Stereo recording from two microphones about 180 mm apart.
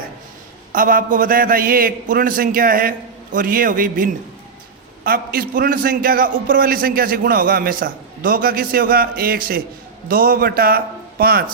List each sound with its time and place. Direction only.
0.7 s a man's voice: 50° right (ahead or behind)